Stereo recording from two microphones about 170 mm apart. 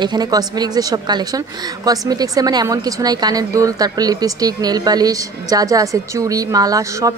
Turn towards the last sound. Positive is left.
turn(degrees=-20)  # may be behind; listen again after turning